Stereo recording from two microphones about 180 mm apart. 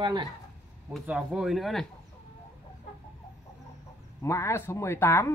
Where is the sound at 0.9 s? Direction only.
5° right (ahead or behind).